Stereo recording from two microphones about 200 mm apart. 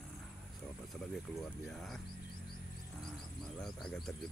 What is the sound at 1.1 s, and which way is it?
Speech, centre (ahead or behind).